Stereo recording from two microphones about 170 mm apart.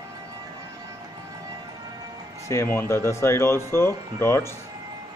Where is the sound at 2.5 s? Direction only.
15° left (ahead or behind).